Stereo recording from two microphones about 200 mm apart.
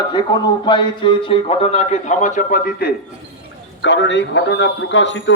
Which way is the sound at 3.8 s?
65° left (ahead or behind).